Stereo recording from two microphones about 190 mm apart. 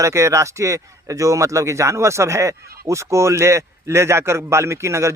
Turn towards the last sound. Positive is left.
turn(degrees=-15)  # may be behind; listen again after turning